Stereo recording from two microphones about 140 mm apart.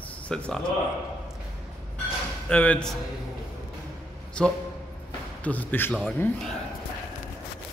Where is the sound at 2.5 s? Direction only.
10° left (ahead or behind).